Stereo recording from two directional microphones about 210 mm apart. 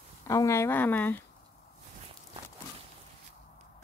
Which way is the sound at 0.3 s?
15° left (ahead or behind).